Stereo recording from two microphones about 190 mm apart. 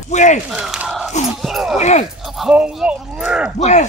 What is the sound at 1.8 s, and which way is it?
Speech, 35° left (ahead or behind).